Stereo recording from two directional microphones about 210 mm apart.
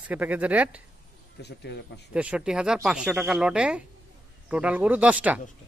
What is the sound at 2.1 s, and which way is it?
Speech, 5° right (ahead or behind).